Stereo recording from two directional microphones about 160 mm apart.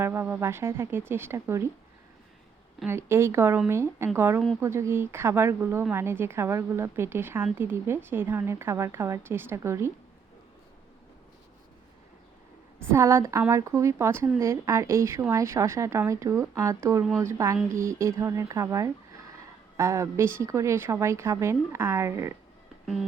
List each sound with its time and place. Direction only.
0.0 s a woman's voice: 15° right (ahead or behind)
2.8 s a woman's voice: 15° right (ahead or behind)
12.9 s a woman's voice: 15° right (ahead or behind)